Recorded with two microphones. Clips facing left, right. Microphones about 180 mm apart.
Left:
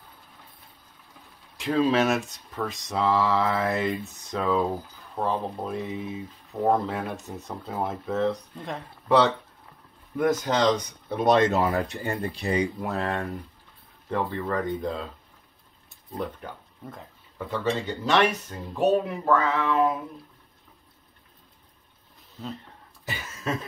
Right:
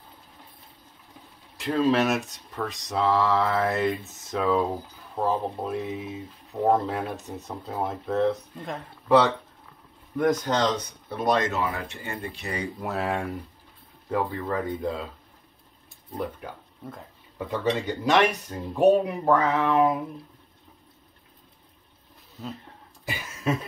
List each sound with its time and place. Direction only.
1.6 s speech: 5° left (ahead or behind)
11.2 s speech: 30° left (ahead or behind)
12.8 s speech: 5° right (ahead or behind)
16.2 s speech: 5° right (ahead or behind)
23.0 s a sound: 10° right (ahead or behind)